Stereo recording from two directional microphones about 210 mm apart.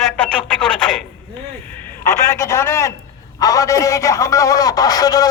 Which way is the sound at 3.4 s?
15° left (ahead or behind).